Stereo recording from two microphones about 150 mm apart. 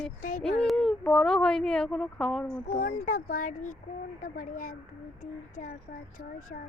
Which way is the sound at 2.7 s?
60° left (ahead or behind).